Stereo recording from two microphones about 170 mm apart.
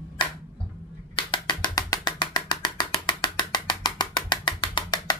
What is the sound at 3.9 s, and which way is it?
Music, 30° left (ahead or behind).